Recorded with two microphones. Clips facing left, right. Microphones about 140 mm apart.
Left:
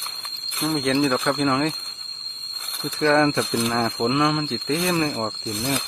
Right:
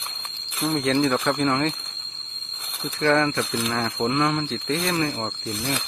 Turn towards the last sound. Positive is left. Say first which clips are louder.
# left 2 dB
turn(degrees=15)  # may be behind; listen again after turning